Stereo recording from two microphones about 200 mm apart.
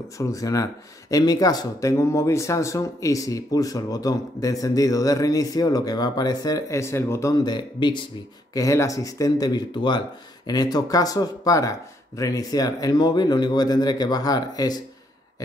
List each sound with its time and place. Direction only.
0.2 s speech: 15° left (ahead or behind)